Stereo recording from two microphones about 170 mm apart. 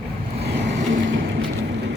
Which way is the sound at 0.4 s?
90° right.